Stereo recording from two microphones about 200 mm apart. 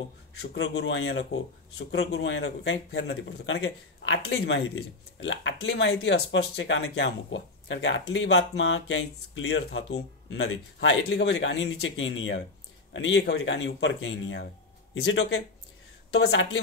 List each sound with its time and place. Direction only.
0.4 s speech: 60° left (ahead or behind)
15.0 s speech: 80° left
16.2 s speech: 65° left (ahead or behind)